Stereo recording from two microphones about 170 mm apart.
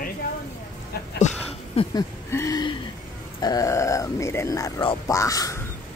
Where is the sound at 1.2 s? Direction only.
45° left (ahead or behind).